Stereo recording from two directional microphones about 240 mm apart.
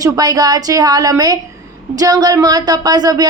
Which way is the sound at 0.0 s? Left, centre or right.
Centre.